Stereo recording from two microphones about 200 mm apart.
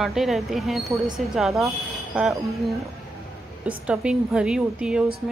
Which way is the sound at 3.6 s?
5° right (ahead or behind).